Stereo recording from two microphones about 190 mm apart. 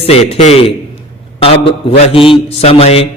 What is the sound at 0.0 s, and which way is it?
A man's voice, 30° left (ahead or behind).